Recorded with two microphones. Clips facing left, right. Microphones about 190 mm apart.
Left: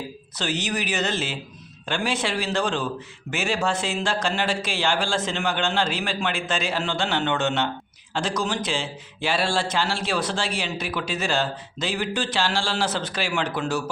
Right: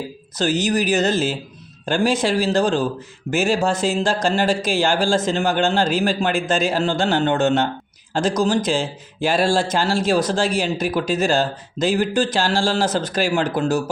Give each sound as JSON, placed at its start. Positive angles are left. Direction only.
{"t": 0.3, "sound": "speech", "side_deg": -40}